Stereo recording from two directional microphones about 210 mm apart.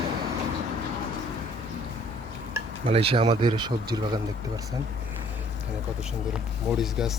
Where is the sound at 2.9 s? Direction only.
25° right (ahead or behind).